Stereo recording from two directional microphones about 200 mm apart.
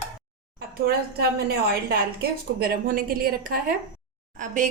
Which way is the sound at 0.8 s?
50° right (ahead or behind).